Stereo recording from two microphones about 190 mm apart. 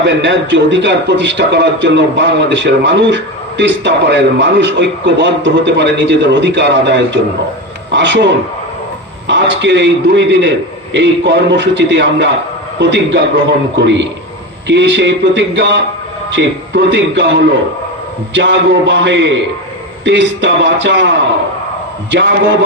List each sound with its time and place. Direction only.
0.0 s a man's voice: 75° right (ahead or behind)
18.3 s a man's voice: 75° right (ahead or behind)
22.1 s a man's voice: 70° right (ahead or behind)